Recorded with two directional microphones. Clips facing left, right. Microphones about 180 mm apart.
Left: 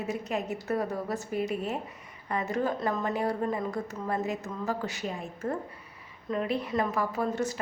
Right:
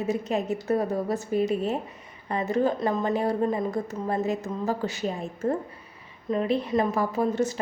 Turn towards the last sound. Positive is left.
turn(degrees=-25)  # may be behind; listen again after turning